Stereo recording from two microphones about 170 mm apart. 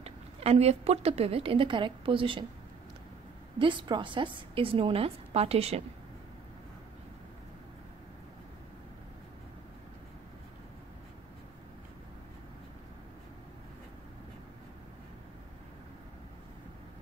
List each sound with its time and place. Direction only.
0.0 s a woman's voice: 35° right (ahead or behind)
3.5 s a woman's voice: 30° right (ahead or behind)